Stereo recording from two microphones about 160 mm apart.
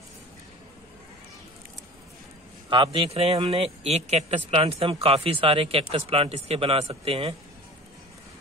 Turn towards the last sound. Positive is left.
turn(degrees=-35)  # may be behind; listen again after turning